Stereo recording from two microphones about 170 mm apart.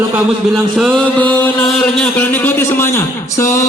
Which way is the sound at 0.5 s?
Centre (ahead or behind).